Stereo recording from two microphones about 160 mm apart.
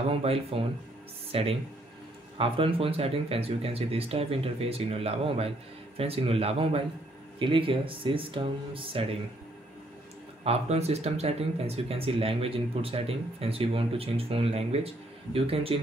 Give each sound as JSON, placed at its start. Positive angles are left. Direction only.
{"t": 0.1, "sound": "speech", "side_deg": -40}
{"t": 10.4, "sound": "speech", "side_deg": -40}